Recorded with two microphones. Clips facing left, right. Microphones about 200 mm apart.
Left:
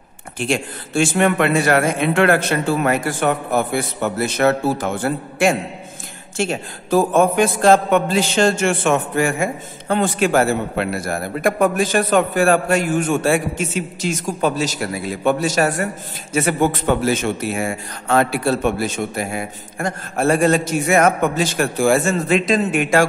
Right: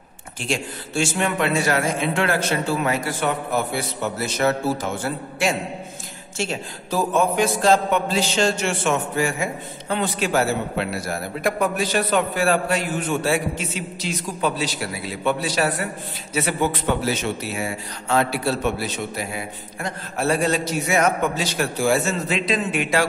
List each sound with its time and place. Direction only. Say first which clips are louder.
0.4 s a man's voice: left 5 dB; 55° left (ahead or behind)